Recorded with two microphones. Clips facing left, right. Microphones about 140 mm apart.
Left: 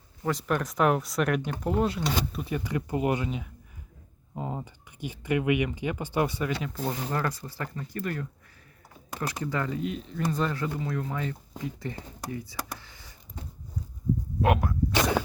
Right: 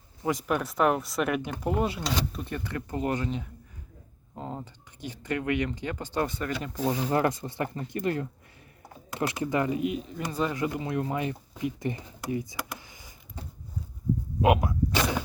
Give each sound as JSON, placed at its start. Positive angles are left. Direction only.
{"t": 0.4, "sound": "speech", "side_deg": -5}
{"t": 2.4, "sound": "speech", "side_deg": 10}
{"t": 7.1, "sound": "speech", "side_deg": -20}
{"t": 14.4, "sound": "speech", "side_deg": -10}